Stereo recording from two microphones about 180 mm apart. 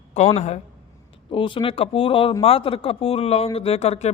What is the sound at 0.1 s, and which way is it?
Speech, 35° left (ahead or behind).